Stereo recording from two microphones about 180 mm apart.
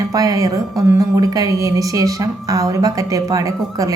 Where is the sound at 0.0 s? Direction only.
20° right (ahead or behind).